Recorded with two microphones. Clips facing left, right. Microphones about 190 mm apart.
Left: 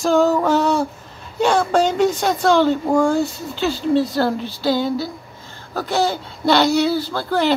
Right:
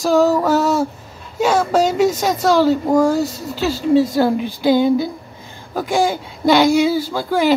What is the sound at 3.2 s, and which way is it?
Speech, 40° right (ahead or behind).